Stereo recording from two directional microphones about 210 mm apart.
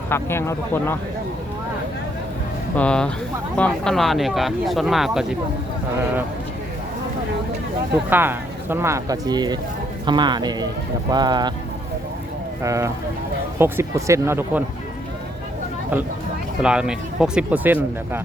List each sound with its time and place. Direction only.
0.1 s speech: 10° left (ahead or behind)
2.7 s speech: 5° left (ahead or behind)
8.1 s speech: 10° right (ahead or behind)
12.6 s speech: 15° right (ahead or behind)
16.6 s speech: 5° right (ahead or behind)